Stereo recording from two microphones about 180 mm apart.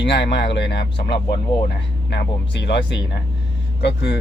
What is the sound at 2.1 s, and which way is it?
Speech, 70° left (ahead or behind).